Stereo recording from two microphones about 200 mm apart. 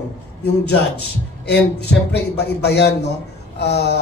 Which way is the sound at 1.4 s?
55° left (ahead or behind).